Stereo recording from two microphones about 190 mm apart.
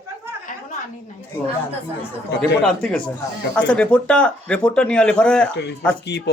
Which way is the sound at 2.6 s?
5° left (ahead or behind).